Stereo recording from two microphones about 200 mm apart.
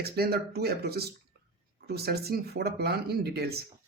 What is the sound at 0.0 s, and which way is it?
Speech, 55° right (ahead or behind).